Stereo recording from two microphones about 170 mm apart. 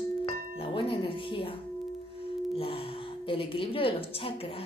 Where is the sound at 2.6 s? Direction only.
30° left (ahead or behind).